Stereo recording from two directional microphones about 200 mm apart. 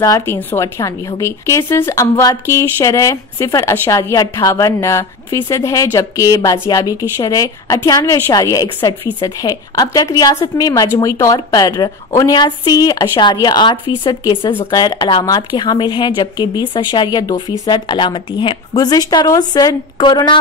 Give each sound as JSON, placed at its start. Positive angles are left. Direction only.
{"t": 0.0, "sound": "a woman's voice", "side_deg": 15}